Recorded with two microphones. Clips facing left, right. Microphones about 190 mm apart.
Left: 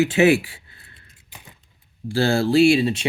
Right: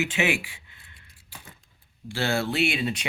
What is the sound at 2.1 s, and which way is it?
Speech, 35° left (ahead or behind).